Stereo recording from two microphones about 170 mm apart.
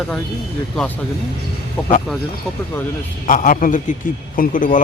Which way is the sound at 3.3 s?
50° left (ahead or behind).